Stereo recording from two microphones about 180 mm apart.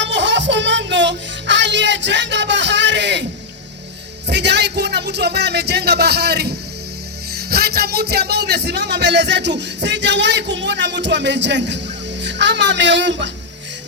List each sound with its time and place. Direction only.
0.0 s music: 80° right
4.3 s speech: 70° right (ahead or behind)